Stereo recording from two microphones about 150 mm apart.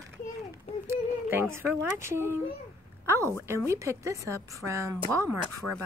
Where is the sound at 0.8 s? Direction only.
15° right (ahead or behind).